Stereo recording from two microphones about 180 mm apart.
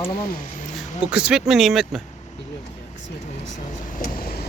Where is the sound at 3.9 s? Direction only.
55° left (ahead or behind).